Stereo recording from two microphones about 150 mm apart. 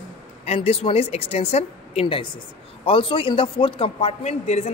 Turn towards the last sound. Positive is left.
turn(degrees=45)  # may be behind; listen again after turning